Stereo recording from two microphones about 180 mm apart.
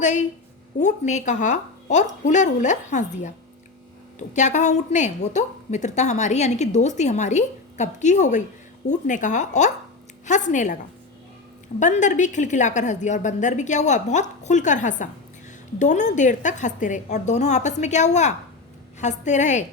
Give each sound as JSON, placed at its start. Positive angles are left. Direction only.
{"t": 0.0, "sound": "a woman's voice", "side_deg": 40}
{"t": 11.8, "sound": "a woman's voice", "side_deg": 45}